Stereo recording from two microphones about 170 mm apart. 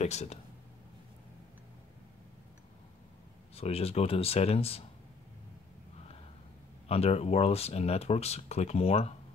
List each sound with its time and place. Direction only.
0.0 s speech: 40° left (ahead or behind)
3.5 s speech: 35° left (ahead or behind)
6.9 s speech: 35° left (ahead or behind)